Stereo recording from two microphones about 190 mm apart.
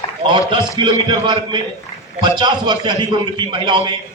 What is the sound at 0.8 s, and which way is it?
Speech, 25° right (ahead or behind).